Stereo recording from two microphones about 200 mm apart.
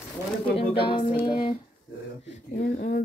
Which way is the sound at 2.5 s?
45° left (ahead or behind).